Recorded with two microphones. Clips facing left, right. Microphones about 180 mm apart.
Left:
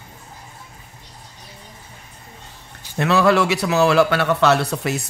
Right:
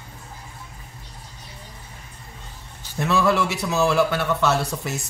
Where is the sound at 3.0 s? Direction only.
75° left (ahead or behind).